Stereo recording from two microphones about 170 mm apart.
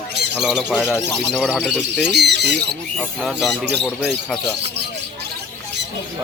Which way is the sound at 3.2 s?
Centre (ahead or behind).